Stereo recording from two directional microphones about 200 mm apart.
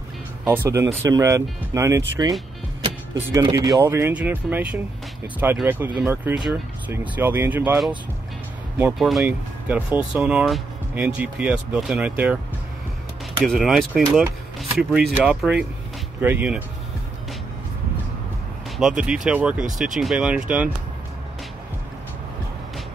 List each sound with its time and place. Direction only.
0.7 s speech: 15° right (ahead or behind)
3.2 s speech: 15° right (ahead or behind)
8.9 s speech: centre (ahead or behind)
13.4 s speech: centre (ahead or behind)
18.8 s speech: 5° right (ahead or behind)